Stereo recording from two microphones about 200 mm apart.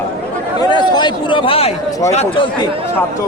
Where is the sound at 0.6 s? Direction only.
20° left (ahead or behind).